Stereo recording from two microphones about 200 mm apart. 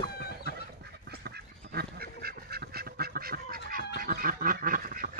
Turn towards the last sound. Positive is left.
turn(degrees=-45)  # may be behind; listen again after turning